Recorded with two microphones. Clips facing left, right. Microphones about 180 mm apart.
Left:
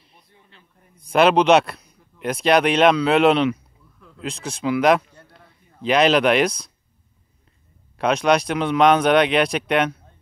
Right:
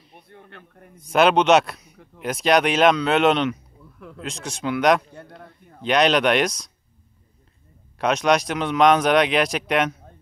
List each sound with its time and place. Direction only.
0.1 s speech: 60° right (ahead or behind)
0.9 s speech: centre (ahead or behind)
1.9 s speech: 75° right (ahead or behind)
2.2 s speech: centre (ahead or behind)
5.1 s a sound: 60° right (ahead or behind)
5.8 s speech: centre (ahead or behind)
8.0 s speech: centre (ahead or behind)